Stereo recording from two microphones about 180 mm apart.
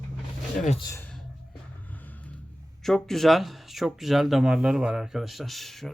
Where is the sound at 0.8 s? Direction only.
20° left (ahead or behind).